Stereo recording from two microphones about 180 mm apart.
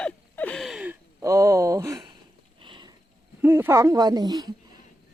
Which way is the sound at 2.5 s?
25° right (ahead or behind).